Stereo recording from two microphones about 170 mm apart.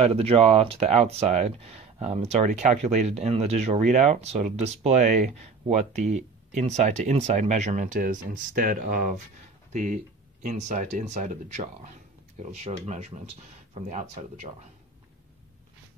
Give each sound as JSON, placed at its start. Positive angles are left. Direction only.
{"t": 0.0, "sound": "speech", "side_deg": -35}
{"t": 9.7, "sound": "speech", "side_deg": -50}